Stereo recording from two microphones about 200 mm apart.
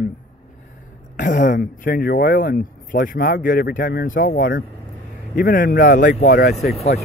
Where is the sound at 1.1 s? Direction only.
40° left (ahead or behind).